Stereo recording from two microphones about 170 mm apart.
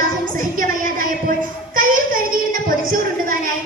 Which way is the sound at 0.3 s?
55° right (ahead or behind).